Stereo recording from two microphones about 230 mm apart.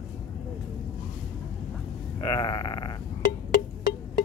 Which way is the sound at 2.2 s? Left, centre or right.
Centre.